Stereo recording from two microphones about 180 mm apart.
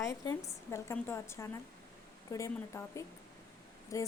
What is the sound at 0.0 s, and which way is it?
A woman's voice, 15° left (ahead or behind).